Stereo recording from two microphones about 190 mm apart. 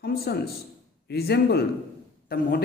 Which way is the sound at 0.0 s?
55° left (ahead or behind).